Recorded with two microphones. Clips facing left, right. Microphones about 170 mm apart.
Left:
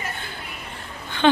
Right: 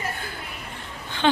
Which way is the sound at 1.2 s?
60° left (ahead or behind).